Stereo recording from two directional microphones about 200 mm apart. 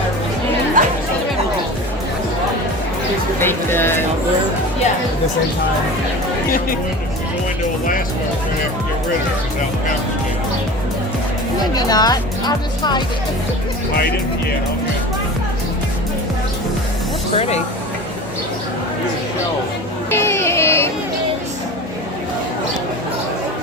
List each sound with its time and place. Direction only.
0.8 s music: 40° right (ahead or behind)
3.4 s music: 10° left (ahead or behind)
11.7 s speech: 20° left (ahead or behind)
17.3 s speech: 30° left (ahead or behind)
20.1 s music: 15° left (ahead or behind)